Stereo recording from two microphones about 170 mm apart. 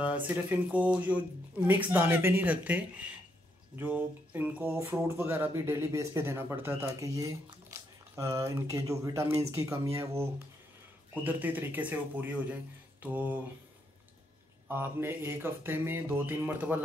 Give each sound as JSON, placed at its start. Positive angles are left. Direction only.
{"t": 0.0, "sound": "speech", "side_deg": -10}
{"t": 14.7, "sound": "speech", "side_deg": -15}